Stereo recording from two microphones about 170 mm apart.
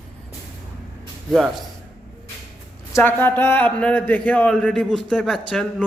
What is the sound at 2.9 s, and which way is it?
Speech, 10° left (ahead or behind).